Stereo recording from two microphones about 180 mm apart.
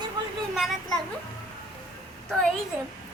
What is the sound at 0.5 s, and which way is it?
Speech, centre (ahead or behind).